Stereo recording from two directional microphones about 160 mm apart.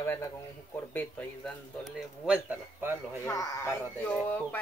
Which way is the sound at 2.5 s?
15° right (ahead or behind).